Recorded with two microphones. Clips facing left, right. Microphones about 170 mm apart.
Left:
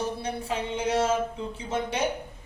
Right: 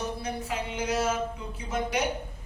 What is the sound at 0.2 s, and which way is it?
A man's voice, 30° left (ahead or behind).